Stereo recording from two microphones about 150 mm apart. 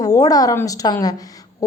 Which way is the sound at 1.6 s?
20° left (ahead or behind).